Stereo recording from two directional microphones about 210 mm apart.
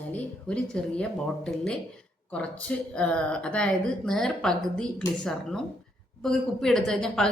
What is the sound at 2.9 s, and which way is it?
A woman's voice, 5° left (ahead or behind).